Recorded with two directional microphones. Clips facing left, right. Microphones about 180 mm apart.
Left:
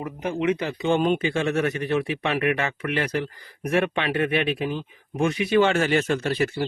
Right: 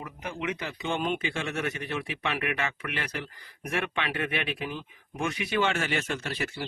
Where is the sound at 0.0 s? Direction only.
30° left (ahead or behind).